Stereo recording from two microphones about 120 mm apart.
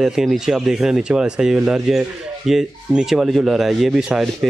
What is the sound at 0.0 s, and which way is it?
Speech, 5° right (ahead or behind).